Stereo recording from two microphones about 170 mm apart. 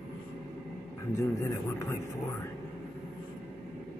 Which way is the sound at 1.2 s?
20° left (ahead or behind).